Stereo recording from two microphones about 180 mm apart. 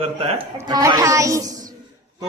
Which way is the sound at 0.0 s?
30° right (ahead or behind).